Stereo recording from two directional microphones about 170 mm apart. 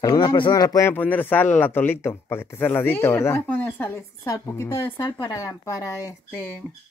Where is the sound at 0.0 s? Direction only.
25° left (ahead or behind).